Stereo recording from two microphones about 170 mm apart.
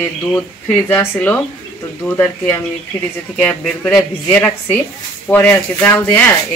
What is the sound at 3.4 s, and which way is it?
Speech, 5° left (ahead or behind).